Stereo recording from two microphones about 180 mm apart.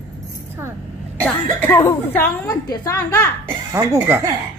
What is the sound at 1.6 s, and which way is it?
A woman's voice, 15° left (ahead or behind).